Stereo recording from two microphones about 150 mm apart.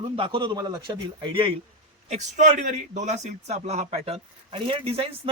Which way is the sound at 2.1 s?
50° right (ahead or behind).